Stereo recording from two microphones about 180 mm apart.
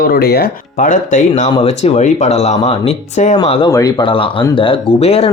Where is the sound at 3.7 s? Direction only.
20° left (ahead or behind).